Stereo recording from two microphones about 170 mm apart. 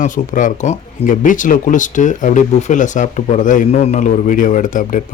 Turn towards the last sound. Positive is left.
turn(degrees=50)  # may be behind; listen again after turning